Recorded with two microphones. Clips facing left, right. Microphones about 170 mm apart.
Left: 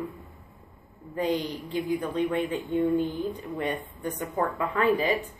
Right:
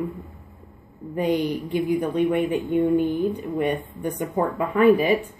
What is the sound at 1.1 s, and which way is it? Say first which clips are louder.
Speech: right 5 dB; 15° right (ahead or behind).